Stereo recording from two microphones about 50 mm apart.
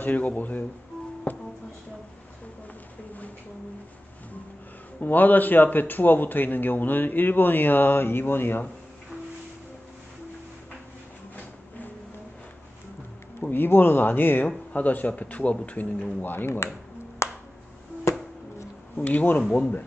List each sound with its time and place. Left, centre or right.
0.0 s speech: left
5.0 s speech: left
13.4 s speech: left
17.2 s finger snapping: left
18.1 s music: left
18.9 s speech: left